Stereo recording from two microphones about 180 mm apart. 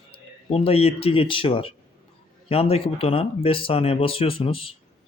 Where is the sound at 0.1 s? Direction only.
35° left (ahead or behind).